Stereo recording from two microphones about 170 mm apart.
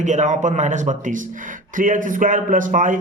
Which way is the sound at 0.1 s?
45° right (ahead or behind).